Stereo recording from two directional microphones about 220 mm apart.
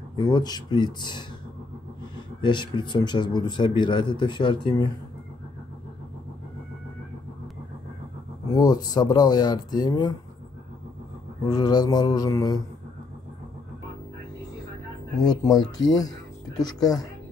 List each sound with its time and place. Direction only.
0.1 s speech: 20° left (ahead or behind)
2.4 s speech: 20° left (ahead or behind)
8.5 s speech: 15° left (ahead or behind)
11.4 s speech: 20° left (ahead or behind)
15.2 s speech: 15° left (ahead or behind)